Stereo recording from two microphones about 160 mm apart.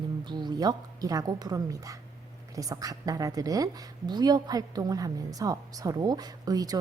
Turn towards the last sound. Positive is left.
turn(degrees=-25)  # may be behind; listen again after turning